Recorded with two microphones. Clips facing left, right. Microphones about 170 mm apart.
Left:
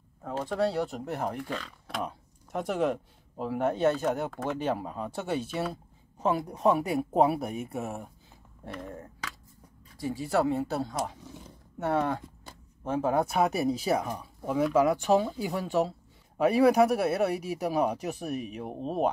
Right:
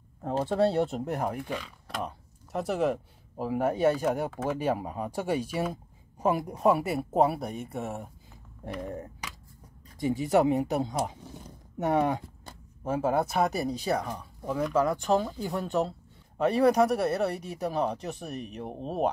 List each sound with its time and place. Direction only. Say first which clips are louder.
0.2 s speech: right 3 dB; 25° right (ahead or behind); by 8.1 s centre (ahead or behind)
8.6 s speech: right 4 dB; 15° right (ahead or behind); by 19.0 s centre (ahead or behind)